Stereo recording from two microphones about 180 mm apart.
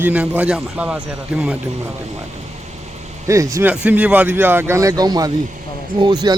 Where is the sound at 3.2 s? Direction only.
20° right (ahead or behind).